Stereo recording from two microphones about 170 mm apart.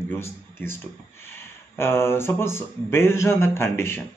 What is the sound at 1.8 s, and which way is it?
Speech, 15° left (ahead or behind).